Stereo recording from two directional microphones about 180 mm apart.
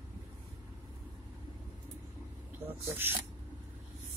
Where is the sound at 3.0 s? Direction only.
10° right (ahead or behind).